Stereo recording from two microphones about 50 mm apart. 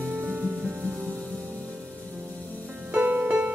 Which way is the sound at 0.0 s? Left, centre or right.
Right.